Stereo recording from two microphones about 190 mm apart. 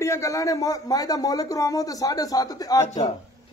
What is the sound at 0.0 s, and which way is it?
Speech, 15° left (ahead or behind).